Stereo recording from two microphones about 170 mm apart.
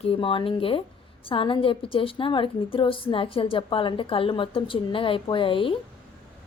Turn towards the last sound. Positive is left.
turn(degrees=30)  # may be behind; listen again after turning